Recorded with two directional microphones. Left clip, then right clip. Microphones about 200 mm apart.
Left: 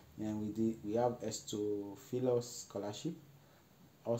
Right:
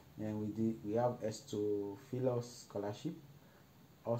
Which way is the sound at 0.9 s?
10° left (ahead or behind).